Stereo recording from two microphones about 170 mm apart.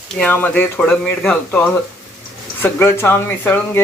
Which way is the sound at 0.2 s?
10° left (ahead or behind).